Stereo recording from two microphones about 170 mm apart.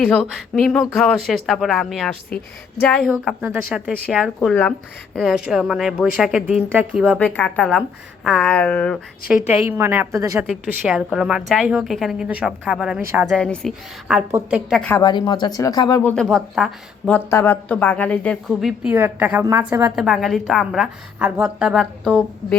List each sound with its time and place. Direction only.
0.3 s a woman's voice: centre (ahead or behind)
7.2 s speech: 10° left (ahead or behind)
9.5 s a woman's voice: 15° right (ahead or behind)
10.4 s speech: 5° right (ahead or behind)
14.3 s a woman's voice: 15° right (ahead or behind)
14.7 s speech: 5° left (ahead or behind)
14.9 s speech: 20° left (ahead or behind)
16.2 s speech: 5° right (ahead or behind)
17.1 s a woman's voice: 15° left (ahead or behind)
18.9 s a woman's voice: 10° right (ahead or behind)
20.0 s speech: centre (ahead or behind)